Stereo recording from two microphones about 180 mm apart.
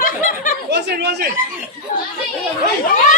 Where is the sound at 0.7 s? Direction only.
70° right (ahead or behind).